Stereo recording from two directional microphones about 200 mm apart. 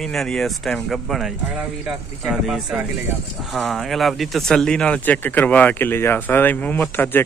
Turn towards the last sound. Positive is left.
turn(degrees=10)  # may be behind; listen again after turning